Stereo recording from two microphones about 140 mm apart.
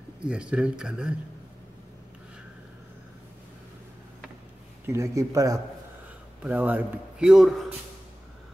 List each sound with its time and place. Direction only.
0.2 s speech: 5° right (ahead or behind)
4.8 s speech: 20° right (ahead or behind)
6.4 s a man's voice: 10° right (ahead or behind)